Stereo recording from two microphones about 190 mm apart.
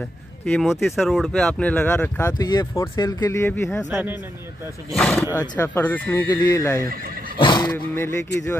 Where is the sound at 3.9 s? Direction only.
10° right (ahead or behind).